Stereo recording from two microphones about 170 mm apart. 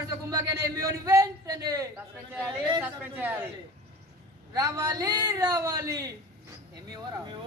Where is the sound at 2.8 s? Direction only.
10° right (ahead or behind).